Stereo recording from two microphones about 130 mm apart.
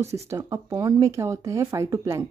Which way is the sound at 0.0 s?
20° right (ahead or behind).